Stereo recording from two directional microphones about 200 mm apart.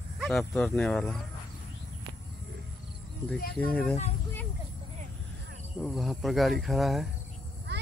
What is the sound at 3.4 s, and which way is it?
Speech, 50° left (ahead or behind).